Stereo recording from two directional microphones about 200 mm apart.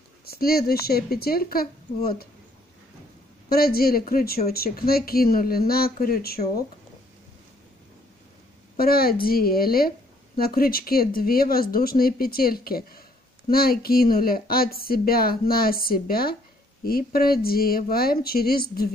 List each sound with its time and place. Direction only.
0.3 s speech: 50° left (ahead or behind)
3.4 s speech: 50° left (ahead or behind)
8.7 s speech: 50° left (ahead or behind)